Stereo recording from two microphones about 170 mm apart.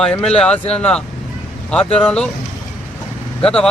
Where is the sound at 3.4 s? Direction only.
5° left (ahead or behind).